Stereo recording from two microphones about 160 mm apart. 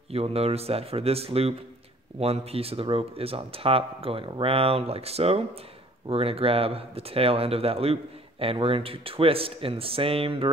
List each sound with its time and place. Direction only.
0.1 s speech: 40° right (ahead or behind)